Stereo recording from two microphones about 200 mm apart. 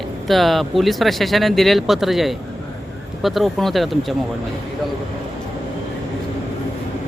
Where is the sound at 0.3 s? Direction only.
Centre (ahead or behind).